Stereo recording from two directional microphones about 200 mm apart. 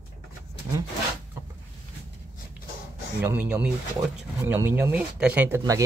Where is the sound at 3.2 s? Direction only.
10° right (ahead or behind).